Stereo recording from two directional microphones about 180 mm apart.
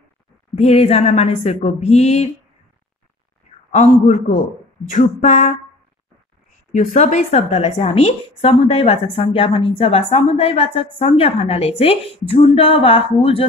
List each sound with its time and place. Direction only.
0.6 s a woman's voice: 35° left (ahead or behind)
3.7 s a woman's voice: 40° left (ahead or behind)
4.8 s a sound: 45° left (ahead or behind)
6.7 s a woman's voice: 45° left (ahead or behind)